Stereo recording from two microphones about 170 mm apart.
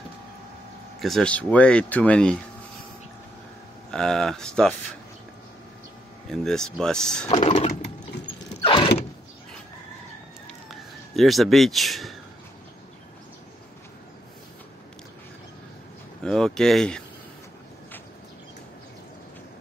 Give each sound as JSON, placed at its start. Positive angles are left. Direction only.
{"t": 1.0, "sound": "speech", "side_deg": 5}
{"t": 3.9, "sound": "speech", "side_deg": 5}
{"t": 6.3, "sound": "speech", "side_deg": 5}
{"t": 7.2, "sound": "typing", "side_deg": 40}
{"t": 8.6, "sound": "vehicle", "side_deg": 30}
{"t": 10.7, "sound": "a sound", "side_deg": 0}
{"t": 16.2, "sound": "a sound", "side_deg": 5}